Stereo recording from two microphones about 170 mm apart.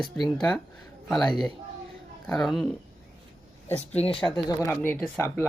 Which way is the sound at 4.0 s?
35° left (ahead or behind).